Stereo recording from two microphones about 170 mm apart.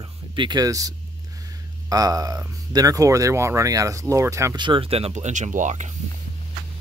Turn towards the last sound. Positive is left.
turn(degrees=-45)  # may be behind; listen again after turning